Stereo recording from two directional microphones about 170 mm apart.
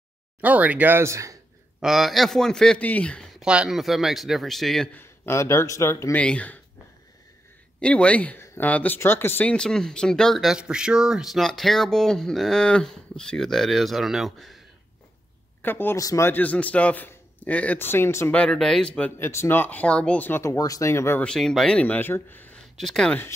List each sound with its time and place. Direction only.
0.4 s speech: 10° right (ahead or behind)
1.8 s speech: centre (ahead or behind)
5.0 s a man's voice: 15° left (ahead or behind)
7.8 s speech: 5° left (ahead or behind)
15.6 s a man's voice: 10° left (ahead or behind)